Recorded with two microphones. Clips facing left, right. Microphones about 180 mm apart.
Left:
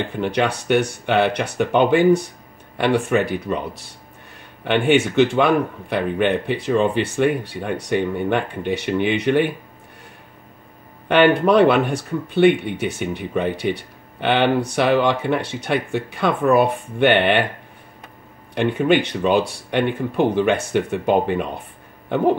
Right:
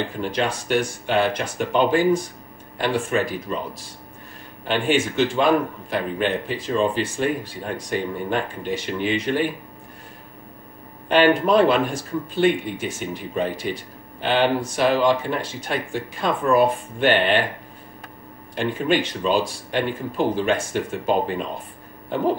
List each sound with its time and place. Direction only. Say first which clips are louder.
0.2 s speech: left 6 dB; 65° left (ahead or behind)
11.1 s speech: left 2 dB; 65° left (ahead or behind)
18.5 s speech: left 4 dB; 65° left (ahead or behind)